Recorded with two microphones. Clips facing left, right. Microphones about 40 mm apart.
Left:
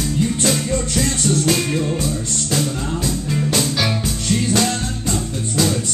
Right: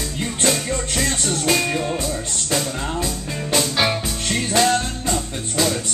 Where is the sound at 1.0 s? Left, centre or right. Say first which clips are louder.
Left 4 dB; centre.